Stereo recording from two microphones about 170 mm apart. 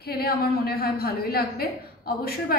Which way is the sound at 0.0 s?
65° left (ahead or behind).